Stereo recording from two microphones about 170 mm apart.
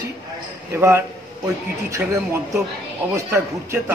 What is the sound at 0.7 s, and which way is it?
A man's voice, 15° right (ahead or behind).